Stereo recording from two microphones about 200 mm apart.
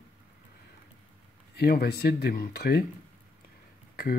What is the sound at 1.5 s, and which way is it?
Speech, 50° left (ahead or behind).